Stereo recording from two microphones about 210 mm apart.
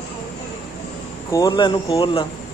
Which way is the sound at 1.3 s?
15° left (ahead or behind).